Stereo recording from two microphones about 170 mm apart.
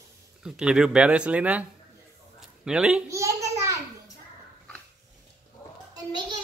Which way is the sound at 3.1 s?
15° right (ahead or behind).